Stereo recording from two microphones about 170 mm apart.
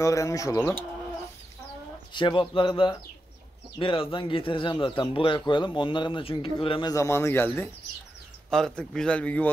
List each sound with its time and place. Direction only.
0.0 s speech: 20° left (ahead or behind)
2.1 s speech: 30° left (ahead or behind)
6.9 s a man's voice: 15° left (ahead or behind)